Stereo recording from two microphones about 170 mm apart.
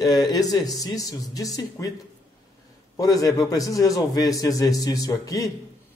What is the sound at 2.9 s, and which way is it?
A man's voice, 20° left (ahead or behind).